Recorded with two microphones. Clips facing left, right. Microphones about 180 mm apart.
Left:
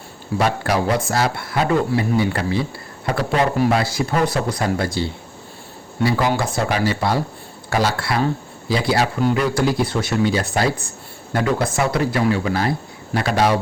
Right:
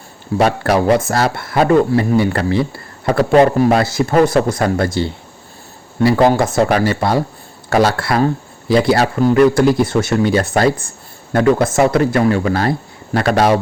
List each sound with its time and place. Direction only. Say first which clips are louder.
0.3 s speech: right 5 dB; 60° right (ahead or behind)
3.2 s speech: right 8 dB; 50° right (ahead or behind)
6.1 s speech: right 8 dB; 55° right (ahead or behind)